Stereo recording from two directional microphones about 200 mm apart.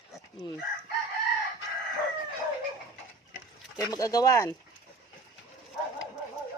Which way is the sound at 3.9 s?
20° left (ahead or behind).